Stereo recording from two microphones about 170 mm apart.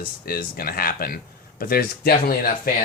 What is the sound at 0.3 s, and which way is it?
Speech, 60° left (ahead or behind).